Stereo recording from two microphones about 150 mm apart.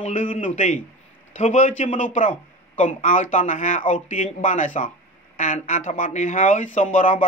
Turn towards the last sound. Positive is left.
turn(degrees=55)  # may be behind; listen again after turning